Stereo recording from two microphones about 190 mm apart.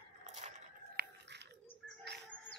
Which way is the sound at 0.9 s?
65° right (ahead or behind).